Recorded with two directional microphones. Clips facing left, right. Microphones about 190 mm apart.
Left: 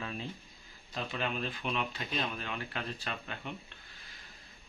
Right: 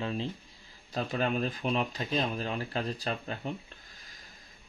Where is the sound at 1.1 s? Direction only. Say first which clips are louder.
Right 6 dB; 40° right (ahead or behind).